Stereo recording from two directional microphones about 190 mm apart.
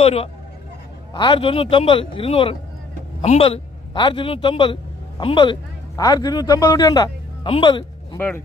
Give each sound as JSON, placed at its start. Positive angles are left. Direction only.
{"t": 0.0, "sound": "a man's voice", "side_deg": 30}